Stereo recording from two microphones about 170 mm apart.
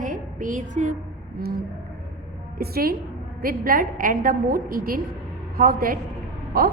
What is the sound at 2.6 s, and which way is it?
A woman's voice, 60° right (ahead or behind).